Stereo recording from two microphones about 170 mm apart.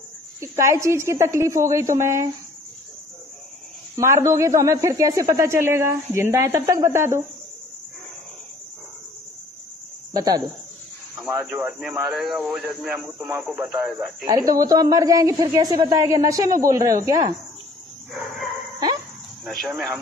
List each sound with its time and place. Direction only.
0.4 s a man's voice: 15° right (ahead or behind)
3.9 s a man's voice: 15° right (ahead or behind)
10.1 s a woman's voice: 20° right (ahead or behind)
11.2 s a man's voice: 5° right (ahead or behind)
14.2 s a woman's voice: 20° right (ahead or behind)
19.4 s speech: centre (ahead or behind)